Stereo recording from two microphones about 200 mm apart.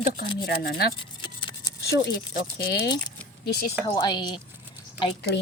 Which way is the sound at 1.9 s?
55° left (ahead or behind).